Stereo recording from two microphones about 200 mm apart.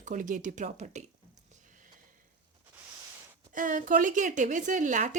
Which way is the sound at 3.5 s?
40° right (ahead or behind).